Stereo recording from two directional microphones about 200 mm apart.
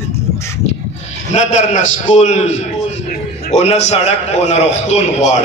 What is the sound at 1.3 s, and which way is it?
A man's voice, 35° left (ahead or behind).